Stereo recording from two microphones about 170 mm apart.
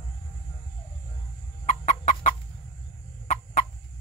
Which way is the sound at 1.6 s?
45° left (ahead or behind).